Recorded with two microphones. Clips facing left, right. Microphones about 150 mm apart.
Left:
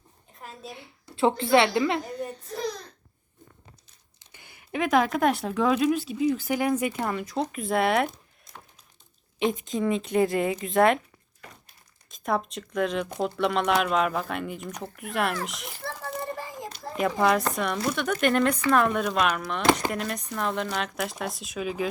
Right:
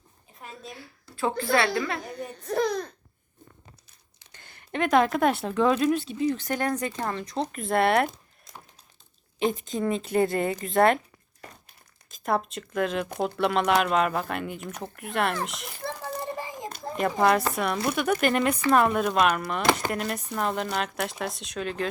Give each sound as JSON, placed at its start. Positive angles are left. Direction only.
{"t": 0.3, "sound": "a sound", "side_deg": 0}
{"t": 0.8, "sound": "speech", "side_deg": 25}
{"t": 2.5, "sound": "speech", "side_deg": -60}
{"t": 4.3, "sound": "speech", "side_deg": 10}
{"t": 9.4, "sound": "speech", "side_deg": 0}
{"t": 12.1, "sound": "speech", "side_deg": 0}
{"t": 15.8, "sound": "a sound", "side_deg": -20}
{"t": 16.9, "sound": "speech", "side_deg": 0}